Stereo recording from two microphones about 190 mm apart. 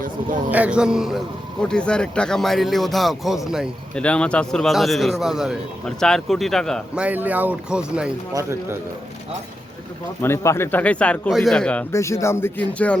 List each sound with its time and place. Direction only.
0.0 s speech: 45° right (ahead or behind)
0.5 s speech: 5° right (ahead or behind)
8.3 s speech: 15° right (ahead or behind)
10.2 s speech: 15° left (ahead or behind)